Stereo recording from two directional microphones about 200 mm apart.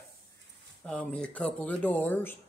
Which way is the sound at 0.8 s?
5° left (ahead or behind).